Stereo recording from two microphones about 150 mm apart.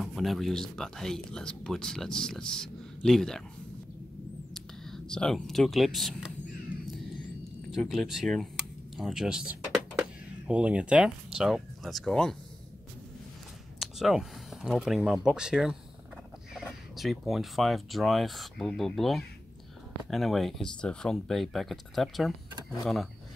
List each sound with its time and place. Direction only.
0.0 s speech: centre (ahead or behind)
4.6 s speech: 5° left (ahead or behind)
7.7 s speech: centre (ahead or behind)
13.7 s speech: centre (ahead or behind)
16.9 s speech: centre (ahead or behind)